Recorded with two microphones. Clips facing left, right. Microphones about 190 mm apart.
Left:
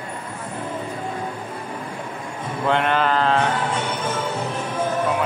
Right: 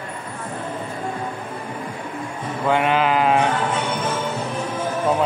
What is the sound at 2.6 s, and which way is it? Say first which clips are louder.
Sheep: right 1 dB; 5° right (ahead or behind).